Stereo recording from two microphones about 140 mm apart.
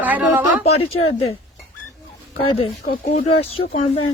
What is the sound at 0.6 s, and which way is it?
Speech, 45° left (ahead or behind).